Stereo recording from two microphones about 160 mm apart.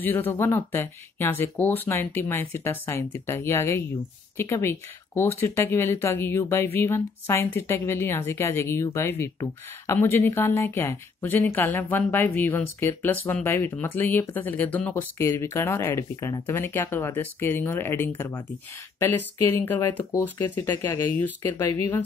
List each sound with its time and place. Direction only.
0.0 s a woman's voice: 10° left (ahead or behind)